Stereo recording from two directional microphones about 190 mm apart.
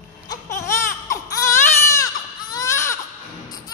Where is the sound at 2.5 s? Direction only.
15° left (ahead or behind).